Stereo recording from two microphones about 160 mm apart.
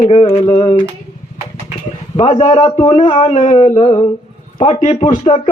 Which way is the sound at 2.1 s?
45° left (ahead or behind).